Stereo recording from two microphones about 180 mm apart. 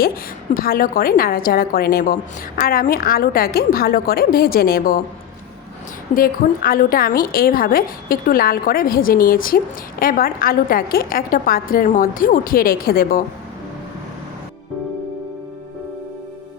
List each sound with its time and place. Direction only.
0.5 s a woman's voice: 55° left (ahead or behind)
6.1 s a woman's voice: 55° left (ahead or behind)